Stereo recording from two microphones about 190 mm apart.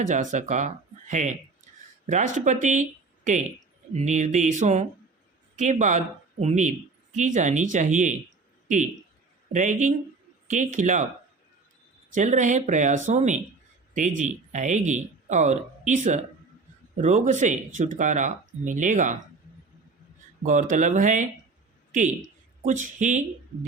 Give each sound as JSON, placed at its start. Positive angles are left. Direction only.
{"t": 0.0, "sound": "speech", "side_deg": -40}
{"t": 3.9, "sound": "speech", "side_deg": -40}
{"t": 12.1, "sound": "speech", "side_deg": -40}
{"t": 17.0, "sound": "speech", "side_deg": -40}
{"t": 20.4, "sound": "speech", "side_deg": -40}
{"t": 22.6, "sound": "speech", "side_deg": -40}